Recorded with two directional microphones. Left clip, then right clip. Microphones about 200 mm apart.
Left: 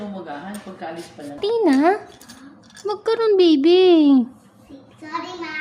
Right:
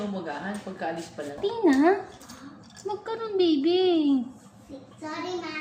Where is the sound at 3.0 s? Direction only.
65° left (ahead or behind).